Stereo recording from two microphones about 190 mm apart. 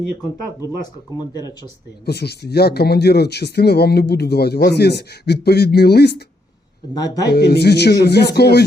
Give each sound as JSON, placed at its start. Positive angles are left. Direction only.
{"t": 0.8, "sound": "speech", "side_deg": 20}
{"t": 2.0, "sound": "speech", "side_deg": 60}
{"t": 6.9, "sound": "speech", "side_deg": 20}
{"t": 7.3, "sound": "speech", "side_deg": 60}